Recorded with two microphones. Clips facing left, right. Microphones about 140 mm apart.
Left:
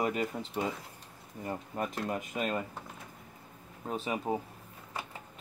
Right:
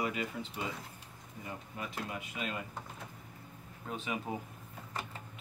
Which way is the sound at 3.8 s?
40° left (ahead or behind).